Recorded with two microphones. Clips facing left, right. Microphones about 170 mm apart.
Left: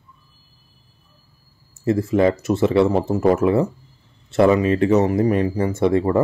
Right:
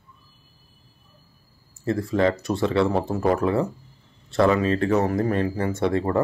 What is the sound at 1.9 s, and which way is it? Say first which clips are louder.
Speech: left 4 dB; 20° left (ahead or behind).